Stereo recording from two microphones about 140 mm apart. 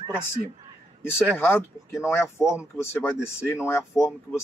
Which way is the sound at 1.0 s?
15° left (ahead or behind).